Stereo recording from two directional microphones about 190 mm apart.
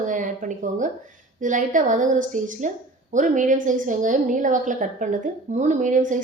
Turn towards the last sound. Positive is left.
turn(degrees=-40)  # may be behind; listen again after turning